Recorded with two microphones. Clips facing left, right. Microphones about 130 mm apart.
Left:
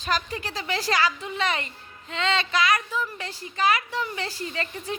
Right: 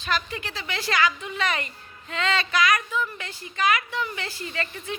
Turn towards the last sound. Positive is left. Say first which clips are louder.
# left 1 dB
turn(degrees=30)  # may be behind; listen again after turning